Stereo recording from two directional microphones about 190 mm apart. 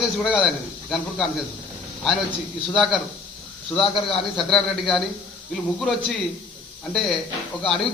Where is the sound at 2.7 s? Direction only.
Centre (ahead or behind).